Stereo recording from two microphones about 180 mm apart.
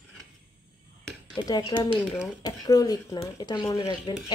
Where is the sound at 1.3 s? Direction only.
20° left (ahead or behind).